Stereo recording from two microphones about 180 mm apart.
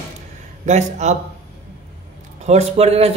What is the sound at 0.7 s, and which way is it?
Speech, 40° right (ahead or behind).